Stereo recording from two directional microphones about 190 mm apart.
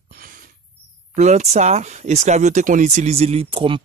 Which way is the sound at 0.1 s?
45° right (ahead or behind).